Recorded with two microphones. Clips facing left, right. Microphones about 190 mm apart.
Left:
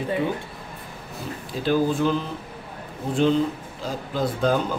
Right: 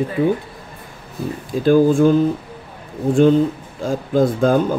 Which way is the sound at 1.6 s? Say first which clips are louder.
Right 9 dB; 50° right (ahead or behind).